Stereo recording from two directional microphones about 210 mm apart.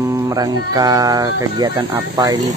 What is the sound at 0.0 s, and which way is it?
Speech, 15° right (ahead or behind).